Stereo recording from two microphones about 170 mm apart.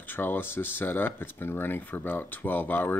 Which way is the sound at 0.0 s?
10° left (ahead or behind).